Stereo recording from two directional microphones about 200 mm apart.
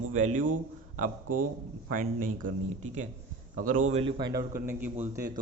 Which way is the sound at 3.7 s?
35° right (ahead or behind).